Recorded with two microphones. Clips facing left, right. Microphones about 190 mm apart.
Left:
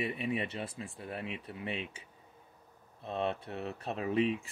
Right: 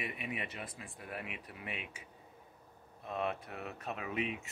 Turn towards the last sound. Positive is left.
turn(degrees=30)  # may be behind; listen again after turning